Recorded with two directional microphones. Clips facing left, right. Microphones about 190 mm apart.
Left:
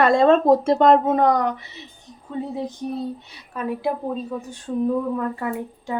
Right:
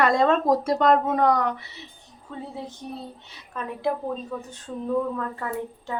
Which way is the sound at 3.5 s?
10° left (ahead or behind).